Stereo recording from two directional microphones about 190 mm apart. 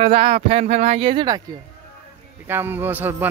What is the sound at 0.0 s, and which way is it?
Speech, 30° right (ahead or behind).